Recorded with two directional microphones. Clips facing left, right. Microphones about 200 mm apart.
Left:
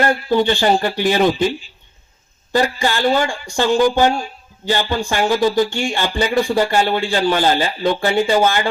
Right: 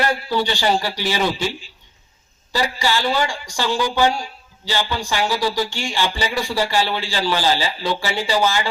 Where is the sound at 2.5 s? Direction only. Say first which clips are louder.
Left 4 dB; 50° left (ahead or behind).